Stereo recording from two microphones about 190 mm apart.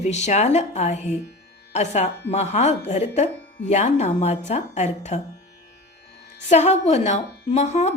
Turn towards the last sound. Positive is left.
turn(degrees=35)  # may be behind; listen again after turning